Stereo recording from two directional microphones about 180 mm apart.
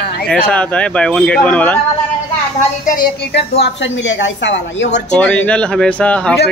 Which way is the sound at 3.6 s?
85° left.